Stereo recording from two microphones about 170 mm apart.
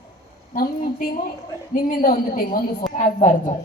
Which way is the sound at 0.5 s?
55° left (ahead or behind).